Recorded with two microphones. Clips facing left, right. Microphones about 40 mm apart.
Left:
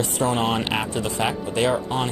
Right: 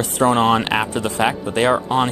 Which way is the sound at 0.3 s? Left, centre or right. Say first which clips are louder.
Right 8 dB; right.